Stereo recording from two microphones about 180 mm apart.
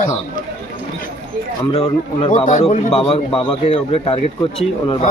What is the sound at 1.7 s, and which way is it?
A man's voice, 35° left (ahead or behind).